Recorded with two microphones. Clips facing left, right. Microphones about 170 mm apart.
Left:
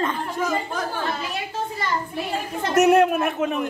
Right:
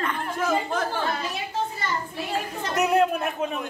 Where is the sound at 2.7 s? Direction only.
75° left (ahead or behind).